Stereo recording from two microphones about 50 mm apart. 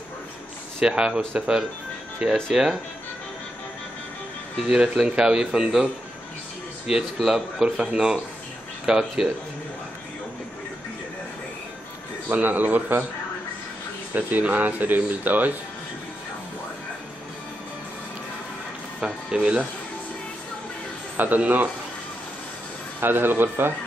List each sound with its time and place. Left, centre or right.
0.7 s speech: centre
4.6 s a man's voice: centre
6.9 s speech: centre
12.3 s speech: right
14.1 s speech: right
18.9 s speech: centre
21.2 s speech: right
22.9 s a man's voice: right